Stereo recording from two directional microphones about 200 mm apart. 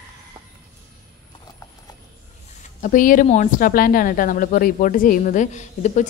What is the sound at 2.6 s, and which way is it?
A woman's voice, 40° left (ahead or behind).